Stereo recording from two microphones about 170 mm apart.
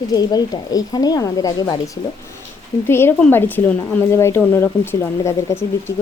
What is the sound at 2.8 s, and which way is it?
A woman's voice, 15° left (ahead or behind).